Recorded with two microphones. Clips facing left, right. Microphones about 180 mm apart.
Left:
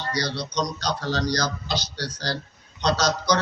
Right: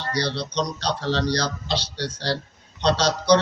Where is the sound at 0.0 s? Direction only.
30° right (ahead or behind).